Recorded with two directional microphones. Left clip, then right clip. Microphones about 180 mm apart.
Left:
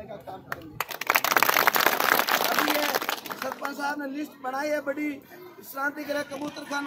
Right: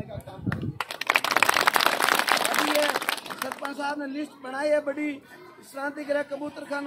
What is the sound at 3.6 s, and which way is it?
A man's voice, 15° right (ahead or behind).